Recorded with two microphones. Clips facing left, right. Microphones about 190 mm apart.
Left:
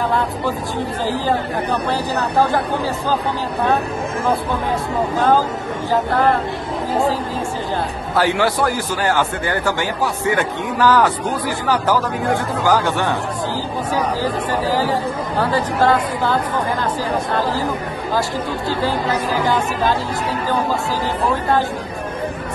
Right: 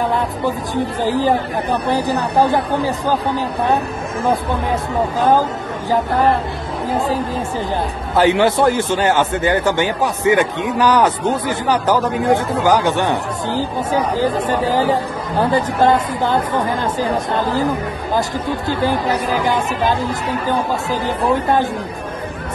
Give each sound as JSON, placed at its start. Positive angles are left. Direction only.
{"t": 1.9, "sound": "speech", "side_deg": -15}
{"t": 8.2, "sound": "a man's voice", "side_deg": -20}
{"t": 19.4, "sound": "speech", "side_deg": -15}